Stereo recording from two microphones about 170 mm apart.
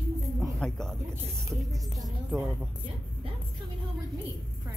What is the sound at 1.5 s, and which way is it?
Music, 20° right (ahead or behind).